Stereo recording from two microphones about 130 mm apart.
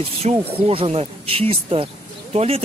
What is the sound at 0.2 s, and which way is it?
Speech, 60° right (ahead or behind).